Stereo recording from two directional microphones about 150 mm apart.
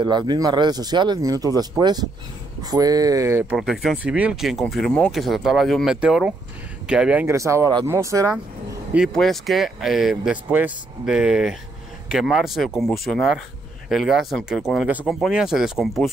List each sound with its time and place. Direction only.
0.0 s speech: 30° right (ahead or behind)
3.5 s speech: centre (ahead or behind)
7.2 s speech: 20° right (ahead or behind)
8.9 s speech: centre (ahead or behind)